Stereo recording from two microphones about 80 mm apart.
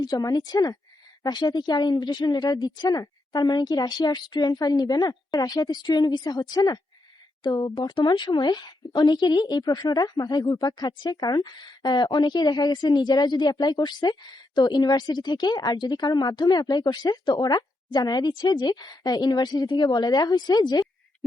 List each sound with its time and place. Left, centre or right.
0.0 s a woman's voice: left